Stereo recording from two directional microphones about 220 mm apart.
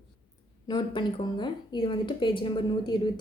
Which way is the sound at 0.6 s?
20° left (ahead or behind).